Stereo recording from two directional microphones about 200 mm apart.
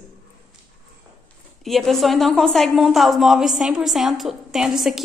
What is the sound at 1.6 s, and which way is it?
A woman's voice, centre (ahead or behind).